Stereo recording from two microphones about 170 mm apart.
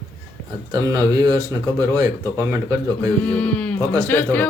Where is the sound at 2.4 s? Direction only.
15° right (ahead or behind).